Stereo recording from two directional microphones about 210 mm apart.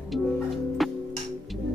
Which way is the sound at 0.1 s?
Centre (ahead or behind).